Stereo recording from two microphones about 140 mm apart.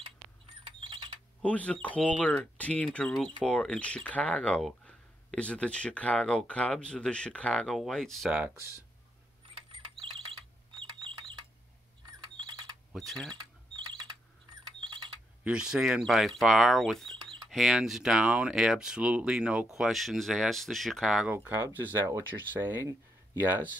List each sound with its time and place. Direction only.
0.7 s mechanisms: 35° right (ahead or behind)
1.4 s speech: 10° left (ahead or behind)
9.7 s ratchet: 35° right (ahead or behind)
10.8 s bird: 35° right (ahead or behind)
12.1 s mechanisms: 30° right (ahead or behind)
12.9 s speech: centre (ahead or behind)
15.4 s speech: 5° right (ahead or behind)
21.5 s speech: 15° right (ahead or behind)